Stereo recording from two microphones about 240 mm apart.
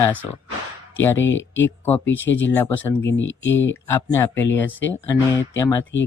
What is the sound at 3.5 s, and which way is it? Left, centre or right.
Speech, centre.